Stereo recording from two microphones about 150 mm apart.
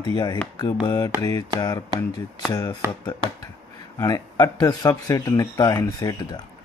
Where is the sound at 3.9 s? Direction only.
25° left (ahead or behind).